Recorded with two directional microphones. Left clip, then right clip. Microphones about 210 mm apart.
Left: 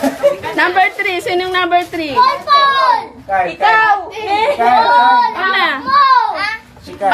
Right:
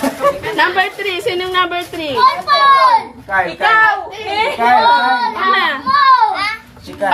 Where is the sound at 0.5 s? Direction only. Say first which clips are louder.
Left 2 dB; 25° left (ahead or behind).